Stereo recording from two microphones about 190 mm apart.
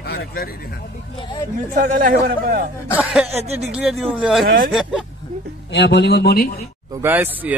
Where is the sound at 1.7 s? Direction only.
50° right (ahead or behind).